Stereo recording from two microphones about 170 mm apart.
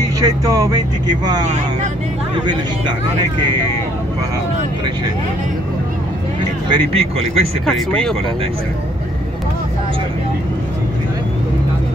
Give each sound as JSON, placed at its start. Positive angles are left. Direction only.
{"t": 0.2, "sound": "speech", "side_deg": -20}
{"t": 6.7, "sound": "speech", "side_deg": -35}
{"t": 7.6, "sound": "speech", "side_deg": 5}